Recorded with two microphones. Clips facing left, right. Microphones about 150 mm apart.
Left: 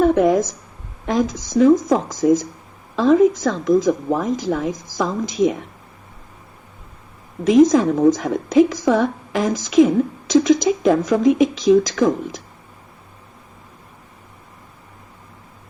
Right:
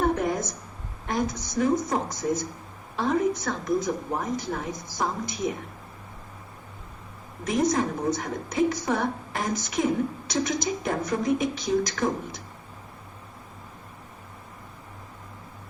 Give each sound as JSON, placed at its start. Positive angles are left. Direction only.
{"t": 0.0, "sound": "a sound", "side_deg": 90}
{"t": 1.0, "sound": "a woman's voice", "side_deg": 90}
{"t": 7.4, "sound": "a woman's voice", "side_deg": 90}